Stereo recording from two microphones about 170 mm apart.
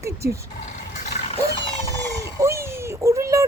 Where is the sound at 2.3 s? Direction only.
15° right (ahead or behind).